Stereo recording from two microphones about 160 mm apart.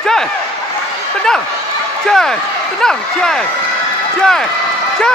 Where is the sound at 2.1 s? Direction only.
5° left (ahead or behind).